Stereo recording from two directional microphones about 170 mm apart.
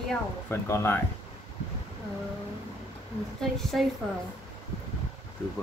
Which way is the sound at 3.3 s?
Centre (ahead or behind).